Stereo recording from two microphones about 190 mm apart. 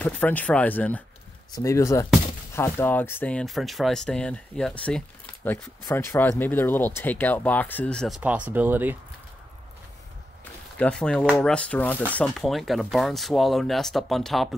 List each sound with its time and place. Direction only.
0.0 s speech: 10° left (ahead or behind)
8.2 s speech: 10° right (ahead or behind)
10.8 s speech: 5° left (ahead or behind)